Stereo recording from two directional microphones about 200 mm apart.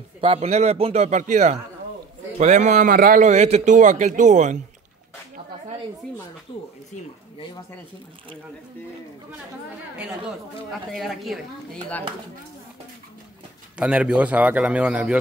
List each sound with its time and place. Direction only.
0.2 s a man's voice: 30° right (ahead or behind)
10.7 s a man's voice: centre (ahead or behind)
13.7 s a man's voice: 5° right (ahead or behind)